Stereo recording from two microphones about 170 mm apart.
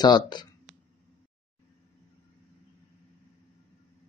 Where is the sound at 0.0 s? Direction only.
25° left (ahead or behind).